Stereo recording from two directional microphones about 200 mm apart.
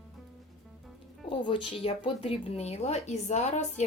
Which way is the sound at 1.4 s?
25° left (ahead or behind).